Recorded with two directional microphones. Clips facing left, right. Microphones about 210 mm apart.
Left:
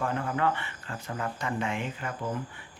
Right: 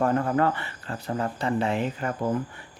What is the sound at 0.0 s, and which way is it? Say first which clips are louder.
Speech: right 6 dB; 40° right (ahead or behind).